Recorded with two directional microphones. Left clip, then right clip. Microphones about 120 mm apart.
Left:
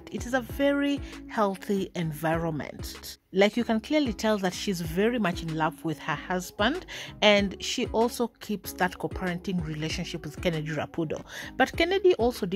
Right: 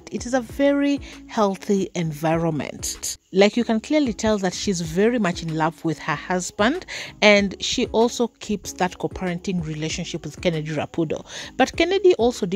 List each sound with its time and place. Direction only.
0.1 s speech: 35° right (ahead or behind); by 3.4 s 60° right (ahead or behind)
3.4 s speech: 40° right (ahead or behind)